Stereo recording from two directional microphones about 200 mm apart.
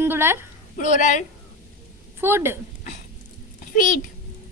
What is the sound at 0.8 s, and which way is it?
Speech, 40° left (ahead or behind).